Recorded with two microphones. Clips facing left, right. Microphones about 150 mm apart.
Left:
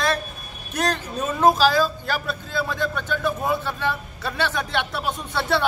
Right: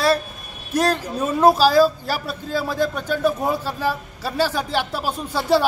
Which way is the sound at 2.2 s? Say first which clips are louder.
Right 2 dB; 40° right (ahead or behind).